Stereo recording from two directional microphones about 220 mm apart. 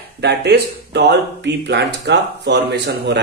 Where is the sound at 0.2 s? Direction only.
50° right (ahead or behind).